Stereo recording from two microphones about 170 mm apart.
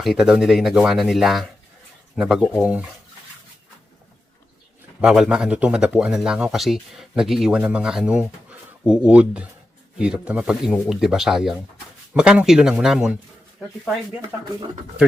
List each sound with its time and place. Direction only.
0.0 s speech: 5° right (ahead or behind)
4.9 s speech: 5° right (ahead or behind)